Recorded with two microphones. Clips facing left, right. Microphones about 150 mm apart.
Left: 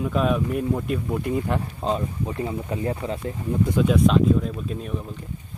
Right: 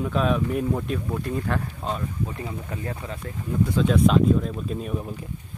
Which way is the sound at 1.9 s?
25° left (ahead or behind).